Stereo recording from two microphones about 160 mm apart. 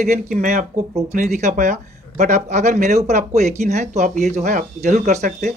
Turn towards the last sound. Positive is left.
turn(degrees=-45)  # may be behind; listen again after turning